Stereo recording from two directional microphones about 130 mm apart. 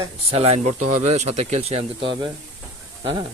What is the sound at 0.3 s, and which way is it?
Speech, 50° right (ahead or behind).